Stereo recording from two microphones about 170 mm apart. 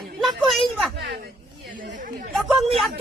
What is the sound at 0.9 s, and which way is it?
Speech, 80° right.